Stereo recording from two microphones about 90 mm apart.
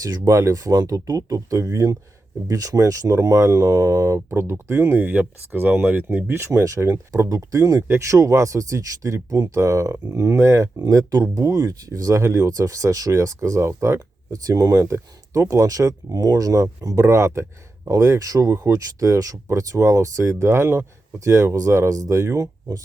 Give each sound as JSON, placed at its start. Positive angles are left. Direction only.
{"t": 0.0, "sound": "speech", "side_deg": -35}